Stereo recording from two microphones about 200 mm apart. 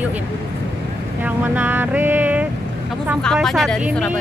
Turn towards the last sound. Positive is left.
turn(degrees=0)  # may be behind; listen again after turning